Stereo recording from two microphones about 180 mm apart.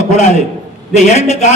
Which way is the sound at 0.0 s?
40° left (ahead or behind).